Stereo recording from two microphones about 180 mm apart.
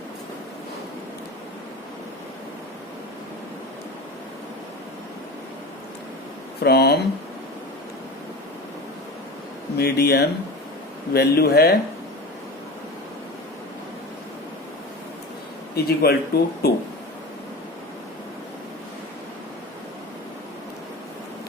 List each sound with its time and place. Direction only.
6.6 s speech: 65° left (ahead or behind)
9.7 s speech: 60° left (ahead or behind)
15.7 s speech: 60° left (ahead or behind)